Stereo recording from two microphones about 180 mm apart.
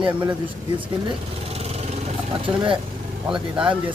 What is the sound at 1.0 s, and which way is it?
Vehicle, 35° right (ahead or behind).